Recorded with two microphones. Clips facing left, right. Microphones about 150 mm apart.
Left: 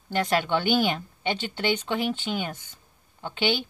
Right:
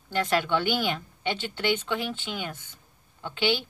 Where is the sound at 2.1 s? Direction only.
20° left (ahead or behind).